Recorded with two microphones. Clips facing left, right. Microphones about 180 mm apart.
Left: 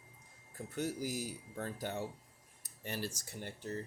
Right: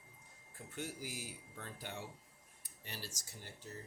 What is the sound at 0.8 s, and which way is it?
Speech, 40° left (ahead or behind).